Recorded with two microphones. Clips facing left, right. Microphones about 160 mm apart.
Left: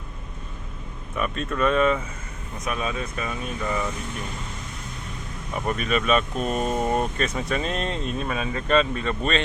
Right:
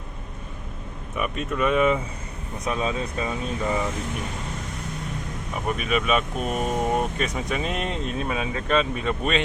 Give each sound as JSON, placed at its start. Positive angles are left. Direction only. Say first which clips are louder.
{"t": 1.1, "sound": "speech", "louder": "even", "side_deg": -10}
{"t": 2.6, "sound": "speech", "louder": "right 2 dB", "side_deg": -25}
{"t": 5.6, "sound": "speech", "louder": "left 1 dB", "side_deg": -5}